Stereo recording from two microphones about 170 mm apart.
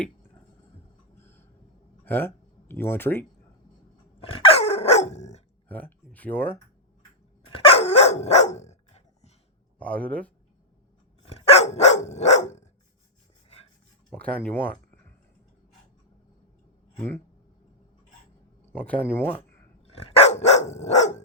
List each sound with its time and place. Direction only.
1.2 s a sound: 15° left (ahead or behind)
2.0 s speech: 10° left (ahead or behind)
4.2 s dog: 35° left (ahead or behind)
5.6 s speech: 10° left (ahead or behind)
7.5 s dog: 35° left (ahead or behind)
9.7 s speech: 10° left (ahead or behind)
11.2 s dog: 35° left (ahead or behind)
14.1 s speech: 10° left (ahead or behind)
18.7 s speech: 10° left (ahead or behind)
19.8 s dog: 35° left (ahead or behind)